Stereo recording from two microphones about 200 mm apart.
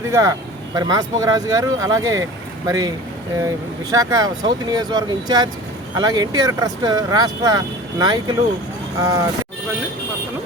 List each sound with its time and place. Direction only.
0.1 s speech: 15° right (ahead or behind)
3.9 s speech: 15° right (ahead or behind)